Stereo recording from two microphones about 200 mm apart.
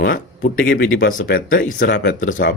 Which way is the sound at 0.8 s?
45° left (ahead or behind).